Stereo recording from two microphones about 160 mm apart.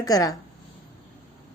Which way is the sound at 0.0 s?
20° left (ahead or behind).